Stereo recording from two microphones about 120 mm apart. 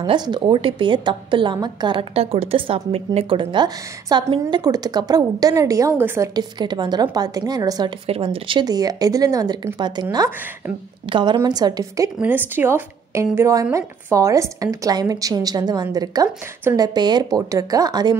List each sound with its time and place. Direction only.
0.0 s a woman's voice: 40° right (ahead or behind); by 6.3 s 20° right (ahead or behind)
6.3 s a woman's voice: 40° right (ahead or behind)
8.1 s a woman's voice: 50° right (ahead or behind)
11.1 s a woman's voice: 40° right (ahead or behind)
12.2 s a woman's voice: 15° right (ahead or behind); by 18.1 s 35° right (ahead or behind)